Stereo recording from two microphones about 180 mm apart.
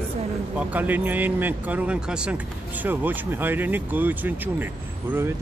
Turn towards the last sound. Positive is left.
turn(degrees=-10)  # may be behind; listen again after turning